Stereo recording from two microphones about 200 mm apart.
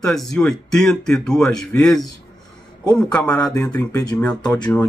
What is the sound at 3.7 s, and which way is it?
Speech, 20° left (ahead or behind).